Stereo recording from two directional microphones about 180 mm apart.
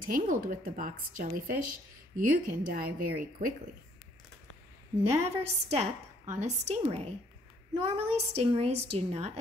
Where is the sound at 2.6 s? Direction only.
55° right (ahead or behind).